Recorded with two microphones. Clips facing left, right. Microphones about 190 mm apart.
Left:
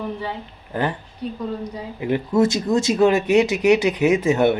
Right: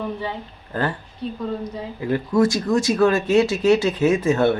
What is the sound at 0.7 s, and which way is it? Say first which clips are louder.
Speech: left 1 dB; 20° left (ahead or behind).